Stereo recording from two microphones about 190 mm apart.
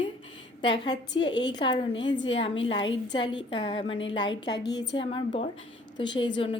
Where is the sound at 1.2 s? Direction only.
70° left (ahead or behind).